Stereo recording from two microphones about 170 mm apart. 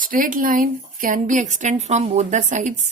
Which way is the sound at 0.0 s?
55° right (ahead or behind).